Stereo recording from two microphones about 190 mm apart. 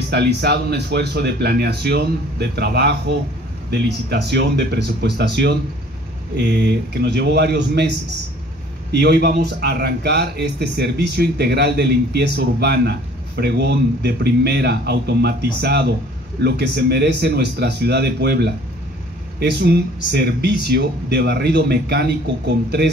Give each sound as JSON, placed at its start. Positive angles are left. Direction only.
{"t": 0.1, "sound": "speech", "side_deg": -60}
{"t": 8.9, "sound": "speech", "side_deg": -60}